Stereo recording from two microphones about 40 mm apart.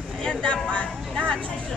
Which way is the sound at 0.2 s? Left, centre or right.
Left.